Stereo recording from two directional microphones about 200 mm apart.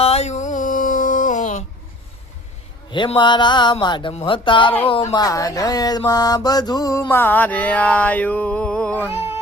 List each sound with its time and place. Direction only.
0.0 s a sound: 30° left (ahead or behind)
2.9 s music: 25° left (ahead or behind)
6.0 s mantra: 20° left (ahead or behind)